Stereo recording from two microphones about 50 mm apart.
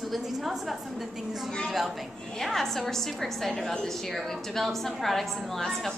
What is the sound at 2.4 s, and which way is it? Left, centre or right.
A woman's voice, centre.